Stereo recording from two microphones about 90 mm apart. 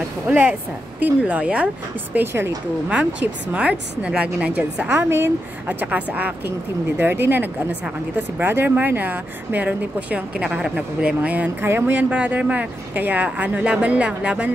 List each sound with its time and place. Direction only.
0.3 s speech: 15° right (ahead or behind)
4.8 s a woman's voice: 25° right (ahead or behind)